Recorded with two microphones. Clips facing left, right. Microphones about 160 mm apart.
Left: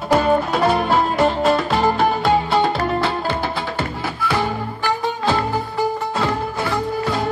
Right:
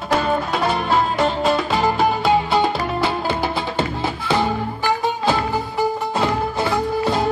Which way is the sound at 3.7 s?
25° right (ahead or behind).